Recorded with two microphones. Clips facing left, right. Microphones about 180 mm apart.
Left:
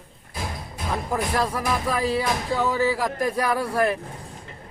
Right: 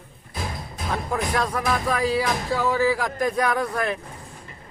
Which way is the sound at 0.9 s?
5° left (ahead or behind).